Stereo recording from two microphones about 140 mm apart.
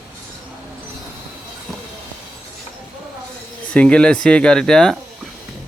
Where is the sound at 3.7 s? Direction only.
5° left (ahead or behind).